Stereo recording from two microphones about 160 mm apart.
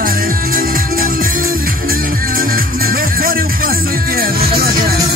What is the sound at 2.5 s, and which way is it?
Music, 65° right (ahead or behind).